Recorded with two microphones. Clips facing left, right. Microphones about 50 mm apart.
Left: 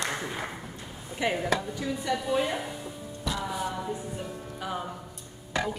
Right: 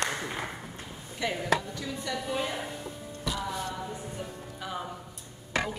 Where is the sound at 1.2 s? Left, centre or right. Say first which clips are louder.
Left 1 dB; centre.